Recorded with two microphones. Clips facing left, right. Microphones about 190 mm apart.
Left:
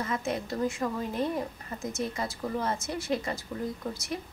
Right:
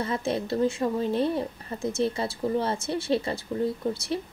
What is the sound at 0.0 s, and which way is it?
A woman's voice, 30° right (ahead or behind).